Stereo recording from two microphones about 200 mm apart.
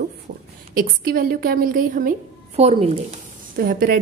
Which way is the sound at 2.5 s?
30° right (ahead or behind).